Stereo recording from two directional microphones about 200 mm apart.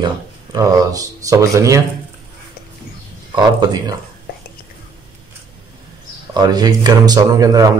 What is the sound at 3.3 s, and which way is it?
Speech, 20° right (ahead or behind).